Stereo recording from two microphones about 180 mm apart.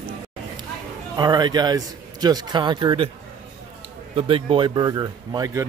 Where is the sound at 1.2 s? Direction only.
20° right (ahead or behind).